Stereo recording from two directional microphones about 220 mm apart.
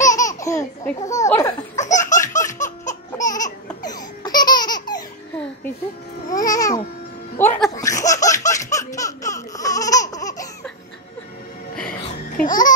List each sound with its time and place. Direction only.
0.0 s laughter: 15° left (ahead or behind)
1.9 s laughter: 35° left (ahead or behind)
2.6 s baby laughter: 35° left (ahead or behind)
3.8 s laughter: 15° left (ahead or behind)
6.4 s babbling: 15° left (ahead or behind)
7.3 s laughter: 10° left (ahead or behind)
11.7 s music: 5° left (ahead or behind)
12.4 s babbling: 5° left (ahead or behind)